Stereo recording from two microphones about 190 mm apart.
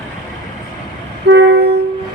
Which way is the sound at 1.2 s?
65° right (ahead or behind).